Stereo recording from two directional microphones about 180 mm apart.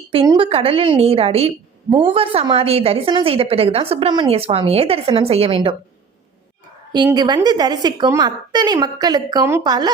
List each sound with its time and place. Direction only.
0.1 s a woman's voice: 30° right (ahead or behind)
6.9 s a woman's voice: 25° right (ahead or behind)